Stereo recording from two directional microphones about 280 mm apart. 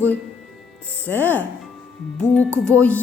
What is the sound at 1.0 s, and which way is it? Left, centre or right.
Speech, centre.